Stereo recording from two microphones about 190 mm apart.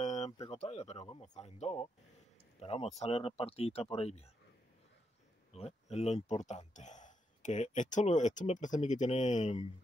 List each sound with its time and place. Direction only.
0.0 s a sound: 35° left (ahead or behind)
0.5 s speech: 35° left (ahead or behind)
5.5 s speech: 30° left (ahead or behind)